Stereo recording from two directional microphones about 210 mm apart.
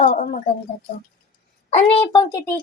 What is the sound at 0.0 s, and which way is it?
Speech, 40° left (ahead or behind).